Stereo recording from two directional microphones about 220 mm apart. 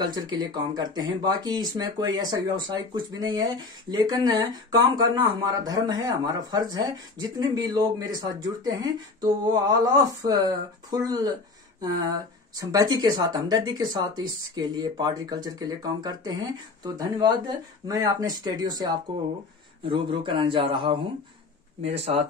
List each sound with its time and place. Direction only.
0.0 s a man's voice: 20° right (ahead or behind)
22.1 s a man's voice: 30° right (ahead or behind)